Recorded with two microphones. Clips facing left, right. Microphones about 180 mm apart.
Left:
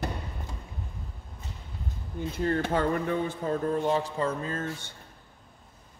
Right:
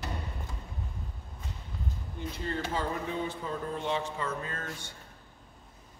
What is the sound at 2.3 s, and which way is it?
Speech, 55° left (ahead or behind).